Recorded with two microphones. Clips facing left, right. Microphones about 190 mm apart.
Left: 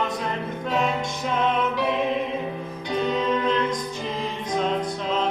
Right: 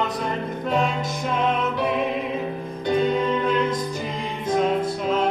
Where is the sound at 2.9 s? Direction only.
50° right (ahead or behind).